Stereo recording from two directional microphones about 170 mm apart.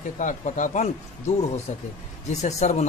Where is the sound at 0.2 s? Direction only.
45° left (ahead or behind).